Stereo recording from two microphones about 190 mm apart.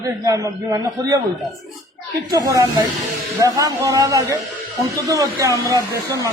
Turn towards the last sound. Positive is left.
turn(degrees=-20)  # may be behind; listen again after turning